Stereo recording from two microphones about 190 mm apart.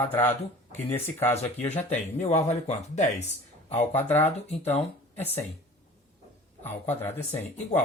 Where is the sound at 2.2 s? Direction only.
35° left (ahead or behind).